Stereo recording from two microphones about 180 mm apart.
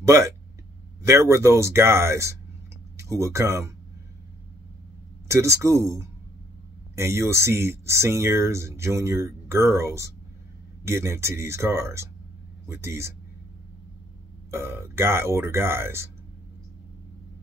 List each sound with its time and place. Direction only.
0.0 s speech: 15° right (ahead or behind)
5.3 s speech: 15° right (ahead or behind)
14.5 s speech: 15° right (ahead or behind)